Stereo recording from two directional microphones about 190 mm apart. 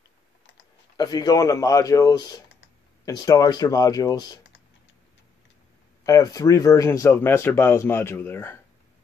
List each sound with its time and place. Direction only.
0.9 s speech: 20° left (ahead or behind)
6.0 s speech: 20° left (ahead or behind)